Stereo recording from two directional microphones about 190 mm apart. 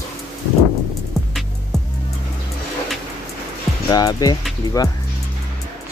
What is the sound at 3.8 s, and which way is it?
Speech, 20° left (ahead or behind).